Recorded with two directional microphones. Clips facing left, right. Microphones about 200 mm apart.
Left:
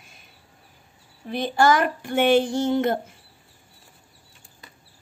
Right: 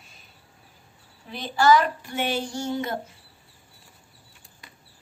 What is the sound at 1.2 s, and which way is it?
Speech, 50° left (ahead or behind).